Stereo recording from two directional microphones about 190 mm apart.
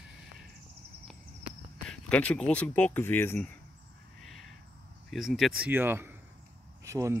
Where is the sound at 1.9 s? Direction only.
5° left (ahead or behind).